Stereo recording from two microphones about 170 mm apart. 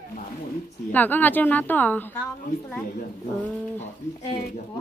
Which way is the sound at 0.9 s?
10° left (ahead or behind).